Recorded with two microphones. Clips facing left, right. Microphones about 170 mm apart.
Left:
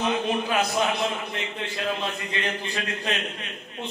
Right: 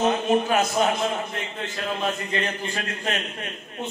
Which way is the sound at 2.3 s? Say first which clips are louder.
Right 2 dB; 45° right (ahead or behind).